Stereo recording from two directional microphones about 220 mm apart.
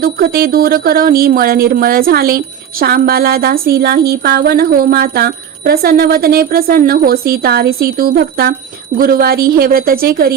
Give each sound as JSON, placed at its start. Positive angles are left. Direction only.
{"t": 0.0, "sound": "a woman's voice", "side_deg": -45}